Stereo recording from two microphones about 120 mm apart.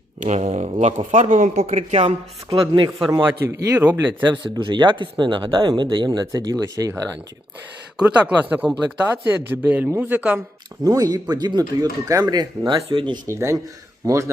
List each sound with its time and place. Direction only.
0.2 s speech: 70° right (ahead or behind)
1.1 s speech: 90° right; by 2.1 s 65° right (ahead or behind)
2.5 s speech: 35° right (ahead or behind)
3.1 s speech: 20° right (ahead or behind)
4.2 s speech: 40° right (ahead or behind)
7.9 s speech: 15° right (ahead or behind)
10.8 s speech: 30° right (ahead or behind)
13.2 s speech: 25° right (ahead or behind)